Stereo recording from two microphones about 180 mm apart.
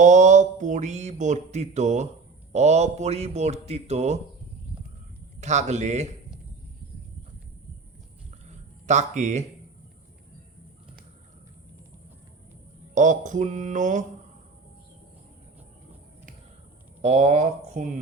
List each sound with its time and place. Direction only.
0.0 s speech: 40° right (ahead or behind)
5.4 s speech: 40° right (ahead or behind)
8.4 s a sound: 40° right (ahead or behind)
12.9 s mantra: 45° right (ahead or behind)
17.0 s speech: 40° right (ahead or behind)